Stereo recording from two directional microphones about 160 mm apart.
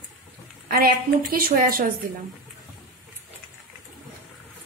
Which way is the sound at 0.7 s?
65° right (ahead or behind).